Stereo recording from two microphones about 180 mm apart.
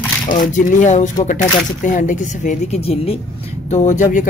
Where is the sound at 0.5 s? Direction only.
45° left (ahead or behind).